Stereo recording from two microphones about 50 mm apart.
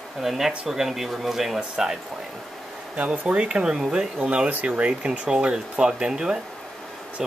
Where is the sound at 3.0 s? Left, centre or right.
Right.